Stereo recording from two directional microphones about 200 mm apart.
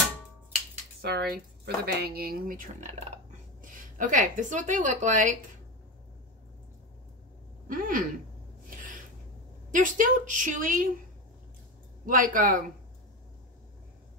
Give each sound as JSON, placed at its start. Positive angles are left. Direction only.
{"t": 1.0, "sound": "a woman's voice", "side_deg": -55}
{"t": 7.6, "sound": "speech", "side_deg": -45}
{"t": 9.7, "sound": "a woman's voice", "side_deg": -40}
{"t": 12.1, "sound": "speech", "side_deg": -45}